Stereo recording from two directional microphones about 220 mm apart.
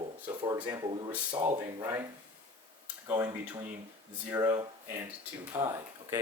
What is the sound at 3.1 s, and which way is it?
Speech, 15° right (ahead or behind).